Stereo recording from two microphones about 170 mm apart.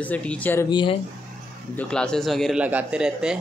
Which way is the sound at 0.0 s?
10° left (ahead or behind).